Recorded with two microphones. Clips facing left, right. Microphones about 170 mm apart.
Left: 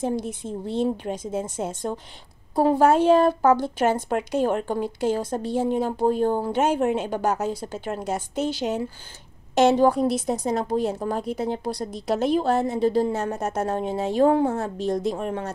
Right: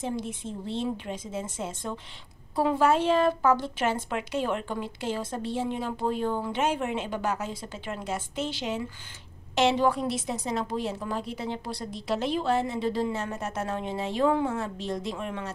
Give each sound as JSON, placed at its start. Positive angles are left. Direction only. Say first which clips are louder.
{"t": 0.2, "sound": "speech", "louder": "left 4 dB", "side_deg": 45}